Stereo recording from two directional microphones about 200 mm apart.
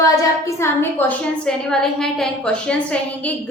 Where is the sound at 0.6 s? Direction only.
10° left (ahead or behind).